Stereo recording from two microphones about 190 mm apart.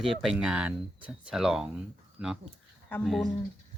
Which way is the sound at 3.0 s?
Centre (ahead or behind).